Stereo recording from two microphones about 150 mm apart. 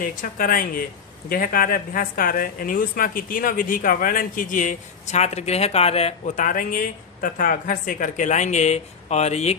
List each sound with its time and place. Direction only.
0.0 s a woman's voice: 65° left (ahead or behind); by 6.3 s 40° left (ahead or behind)
6.3 s a woman's voice: 65° left (ahead or behind); by 9.6 s 45° left (ahead or behind)